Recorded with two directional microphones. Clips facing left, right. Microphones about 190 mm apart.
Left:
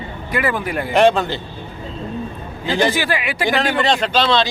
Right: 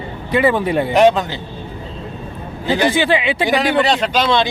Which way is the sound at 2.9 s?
25° right (ahead or behind).